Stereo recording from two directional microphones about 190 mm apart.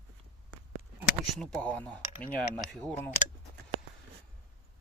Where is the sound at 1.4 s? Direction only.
5° left (ahead or behind).